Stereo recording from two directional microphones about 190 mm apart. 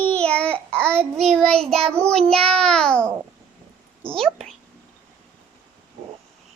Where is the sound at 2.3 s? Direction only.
30° right (ahead or behind).